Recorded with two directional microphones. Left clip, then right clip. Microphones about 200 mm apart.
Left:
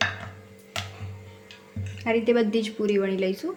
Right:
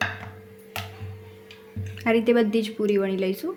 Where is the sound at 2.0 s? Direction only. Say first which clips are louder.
Right 2 dB; 20° right (ahead or behind).